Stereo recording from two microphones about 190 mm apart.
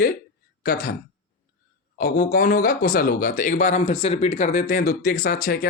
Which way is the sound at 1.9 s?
50° left (ahead or behind).